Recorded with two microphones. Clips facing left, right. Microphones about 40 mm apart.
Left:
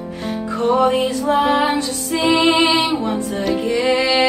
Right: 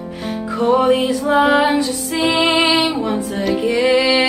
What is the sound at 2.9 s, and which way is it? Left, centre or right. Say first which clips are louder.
Music: even; right.